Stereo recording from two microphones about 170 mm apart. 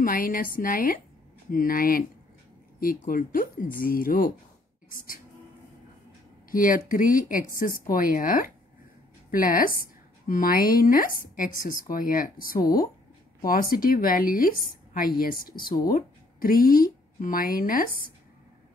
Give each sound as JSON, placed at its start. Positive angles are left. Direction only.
{"t": 0.0, "sound": "speech", "side_deg": 55}
{"t": 6.5, "sound": "a woman's voice", "side_deg": 55}